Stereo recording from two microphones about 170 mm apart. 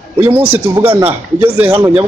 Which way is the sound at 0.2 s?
10° right (ahead or behind).